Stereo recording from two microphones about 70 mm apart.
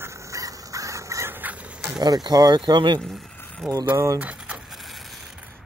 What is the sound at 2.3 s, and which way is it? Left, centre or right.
Speech, right.